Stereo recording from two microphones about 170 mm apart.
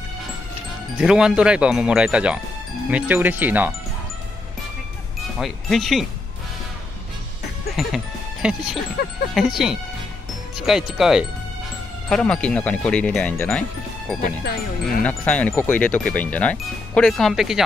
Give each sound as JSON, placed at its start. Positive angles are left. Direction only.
{"t": 0.9, "sound": "speech", "side_deg": -5}
{"t": 5.4, "sound": "speech", "side_deg": 0}
{"t": 7.7, "sound": "speech", "side_deg": -5}
{"t": 14.4, "sound": "speech", "side_deg": 60}
{"t": 15.0, "sound": "speech", "side_deg": 10}